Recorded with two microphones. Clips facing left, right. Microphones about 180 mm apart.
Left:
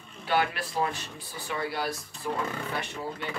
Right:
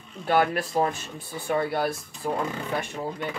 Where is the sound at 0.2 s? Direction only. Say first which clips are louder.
Right 5 dB; 50° right (ahead or behind).